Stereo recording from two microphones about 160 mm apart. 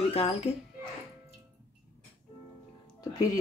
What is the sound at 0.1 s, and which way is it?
Speech, 40° left (ahead or behind).